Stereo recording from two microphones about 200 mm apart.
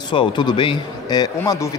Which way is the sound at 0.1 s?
25° left (ahead or behind).